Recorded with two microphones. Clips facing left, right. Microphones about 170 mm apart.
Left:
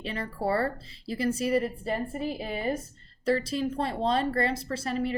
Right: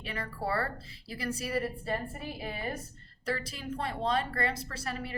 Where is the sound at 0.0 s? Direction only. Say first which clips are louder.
Left 5 dB; 25° left (ahead or behind).